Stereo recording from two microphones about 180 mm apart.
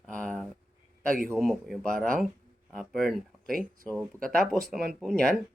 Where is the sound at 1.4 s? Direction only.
Centre (ahead or behind).